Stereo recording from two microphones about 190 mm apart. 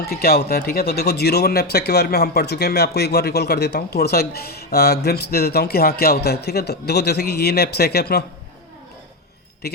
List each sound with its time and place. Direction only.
0.0 s speech: 55° left (ahead or behind)
9.6 s speech: 60° left (ahead or behind)